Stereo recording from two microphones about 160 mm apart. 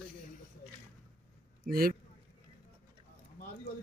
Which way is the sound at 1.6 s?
70° right (ahead or behind).